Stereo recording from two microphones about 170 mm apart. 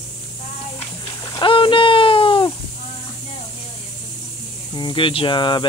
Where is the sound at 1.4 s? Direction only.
30° left (ahead or behind).